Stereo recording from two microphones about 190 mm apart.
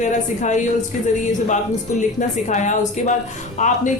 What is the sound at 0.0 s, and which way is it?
Music, 40° left (ahead or behind).